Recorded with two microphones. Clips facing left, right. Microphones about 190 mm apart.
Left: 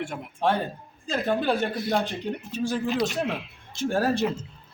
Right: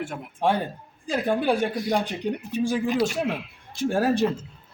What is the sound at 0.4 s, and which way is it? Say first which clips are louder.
A man's voice: right 1 dB; 10° right (ahead or behind).